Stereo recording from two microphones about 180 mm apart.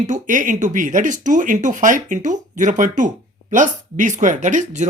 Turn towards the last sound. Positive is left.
turn(degrees=-45)  # may be behind; listen again after turning